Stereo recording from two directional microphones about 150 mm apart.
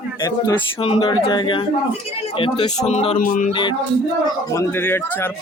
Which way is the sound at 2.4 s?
40° left (ahead or behind).